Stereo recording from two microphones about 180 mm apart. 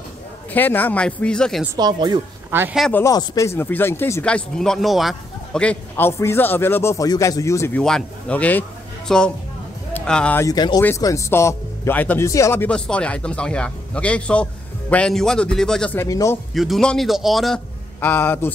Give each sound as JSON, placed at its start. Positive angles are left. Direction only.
{"t": 0.5, "sound": "speech", "side_deg": 10}
{"t": 1.8, "sound": "a woman's voice", "side_deg": -25}
{"t": 2.5, "sound": "a man's voice", "side_deg": -10}
{"t": 2.9, "sound": "a man's voice", "side_deg": 15}
{"t": 10.4, "sound": "speech", "side_deg": 20}
{"t": 16.5, "sound": "a man's voice", "side_deg": 0}
{"t": 18.0, "sound": "speech", "side_deg": 10}